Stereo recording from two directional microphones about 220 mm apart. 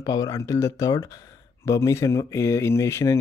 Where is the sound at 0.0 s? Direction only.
15° left (ahead or behind).